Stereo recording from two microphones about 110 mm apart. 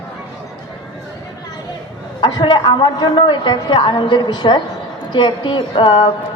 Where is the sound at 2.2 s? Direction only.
45° left (ahead or behind).